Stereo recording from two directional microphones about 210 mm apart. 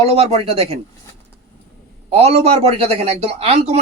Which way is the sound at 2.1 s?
30° right (ahead or behind).